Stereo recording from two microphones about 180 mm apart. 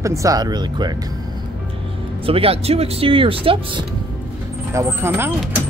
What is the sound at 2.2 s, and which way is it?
Speech, 30° right (ahead or behind).